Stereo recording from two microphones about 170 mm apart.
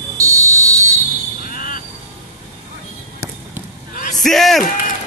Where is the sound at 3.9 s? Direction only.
55° left (ahead or behind).